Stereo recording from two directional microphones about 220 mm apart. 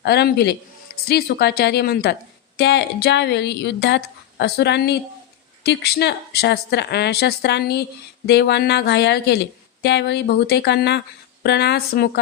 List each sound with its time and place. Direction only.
0.0 s a woman's voice: 50° left (ahead or behind)